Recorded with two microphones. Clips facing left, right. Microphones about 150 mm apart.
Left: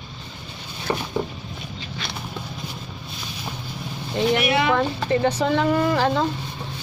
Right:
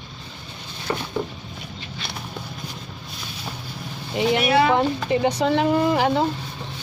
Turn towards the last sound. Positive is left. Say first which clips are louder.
# right 1 dB
turn(degrees=-15)  # may be behind; listen again after turning